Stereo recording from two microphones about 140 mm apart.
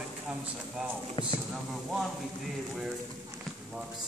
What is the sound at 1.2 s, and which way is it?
Speech, 35° left (ahead or behind).